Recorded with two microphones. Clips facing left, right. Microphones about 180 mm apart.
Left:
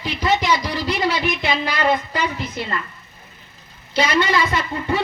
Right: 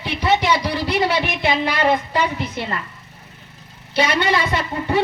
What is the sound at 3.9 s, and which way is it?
Speech, 70° right (ahead or behind).